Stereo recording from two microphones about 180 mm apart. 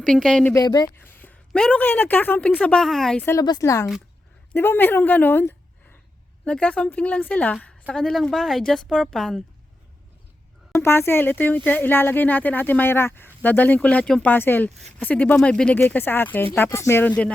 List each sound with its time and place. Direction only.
0.0 s a woman's voice: 5° left (ahead or behind)
0.5 s speech: 20° left (ahead or behind)
1.1 s speech: 10° left (ahead or behind)
3.3 s a woman's voice: 20° left (ahead or behind); by 9.4 s centre (ahead or behind)
10.8 s speech: 15° left (ahead or behind)